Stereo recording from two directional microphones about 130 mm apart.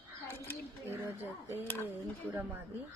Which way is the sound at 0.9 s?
20° right (ahead or behind).